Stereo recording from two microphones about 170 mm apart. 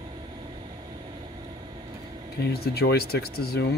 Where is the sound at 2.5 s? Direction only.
70° left (ahead or behind).